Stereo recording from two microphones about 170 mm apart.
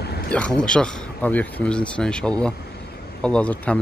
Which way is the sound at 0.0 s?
70° left (ahead or behind).